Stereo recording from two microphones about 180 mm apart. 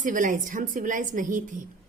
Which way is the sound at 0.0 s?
45° right (ahead or behind).